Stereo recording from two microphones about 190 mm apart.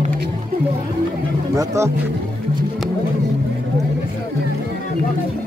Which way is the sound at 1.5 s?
20° right (ahead or behind).